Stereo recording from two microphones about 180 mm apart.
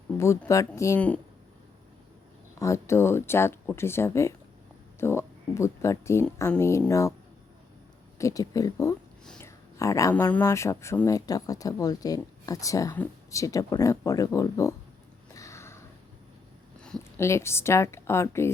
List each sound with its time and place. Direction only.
0.2 s speech: 15° left (ahead or behind)
2.6 s speech: 15° left (ahead or behind)
8.2 s speech: 20° left (ahead or behind)
9.4 s a sound: 15° left (ahead or behind)
10.3 s speech: 15° left (ahead or behind)
15.4 s a sound: 15° left (ahead or behind)
17.0 s speech: 15° left (ahead or behind)